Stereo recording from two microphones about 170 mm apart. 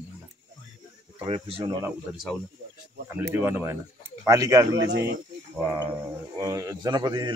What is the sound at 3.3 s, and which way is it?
A man's voice, 10° right (ahead or behind).